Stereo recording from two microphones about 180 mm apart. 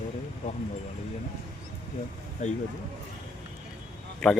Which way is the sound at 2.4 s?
40° left (ahead or behind).